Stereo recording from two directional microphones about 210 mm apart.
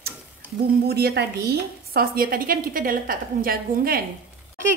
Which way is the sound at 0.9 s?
50° right (ahead or behind).